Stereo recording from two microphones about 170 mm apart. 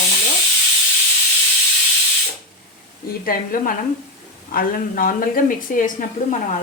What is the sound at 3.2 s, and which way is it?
A woman's voice, 55° left (ahead or behind).